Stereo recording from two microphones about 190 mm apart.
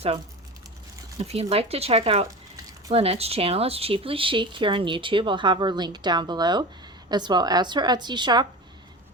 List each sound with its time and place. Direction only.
1.2 s speech: 30° right (ahead or behind)